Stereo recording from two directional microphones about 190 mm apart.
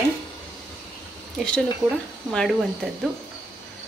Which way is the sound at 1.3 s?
5° left (ahead or behind).